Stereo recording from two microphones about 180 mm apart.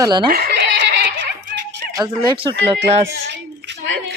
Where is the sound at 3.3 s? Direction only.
75° right (ahead or behind).